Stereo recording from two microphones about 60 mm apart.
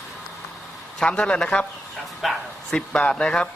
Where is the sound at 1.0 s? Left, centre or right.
Centre.